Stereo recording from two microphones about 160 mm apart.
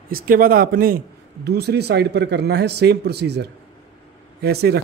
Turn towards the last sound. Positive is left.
turn(degrees=-85)